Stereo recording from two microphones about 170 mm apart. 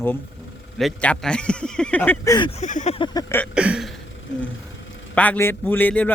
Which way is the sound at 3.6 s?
5° right (ahead or behind).